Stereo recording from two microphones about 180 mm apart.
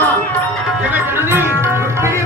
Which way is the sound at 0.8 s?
10° right (ahead or behind).